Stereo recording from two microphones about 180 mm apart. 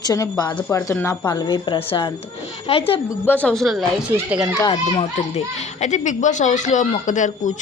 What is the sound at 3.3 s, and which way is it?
A child's voice, 10° left (ahead or behind).